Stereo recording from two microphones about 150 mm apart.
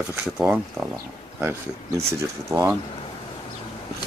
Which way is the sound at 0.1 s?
10° right (ahead or behind).